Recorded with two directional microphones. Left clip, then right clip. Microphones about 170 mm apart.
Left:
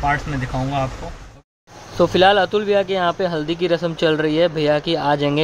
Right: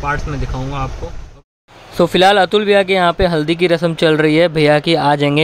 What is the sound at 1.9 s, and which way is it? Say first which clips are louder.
Speech: right 3 dB; 40° right (ahead or behind).